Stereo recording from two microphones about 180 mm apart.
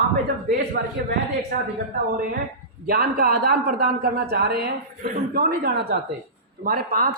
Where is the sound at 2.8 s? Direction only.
55° right (ahead or behind).